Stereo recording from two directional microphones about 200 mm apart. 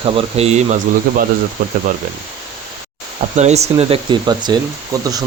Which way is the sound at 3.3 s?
35° right (ahead or behind).